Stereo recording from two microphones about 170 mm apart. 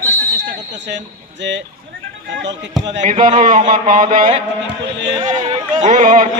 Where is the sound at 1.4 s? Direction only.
90° right.